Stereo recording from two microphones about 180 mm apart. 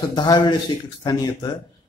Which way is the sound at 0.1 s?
25° left (ahead or behind).